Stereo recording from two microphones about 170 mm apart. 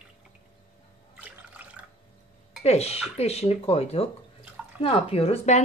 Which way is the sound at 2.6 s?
40° left (ahead or behind).